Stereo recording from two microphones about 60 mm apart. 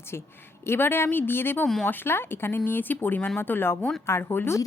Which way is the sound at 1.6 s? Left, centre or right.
Centre.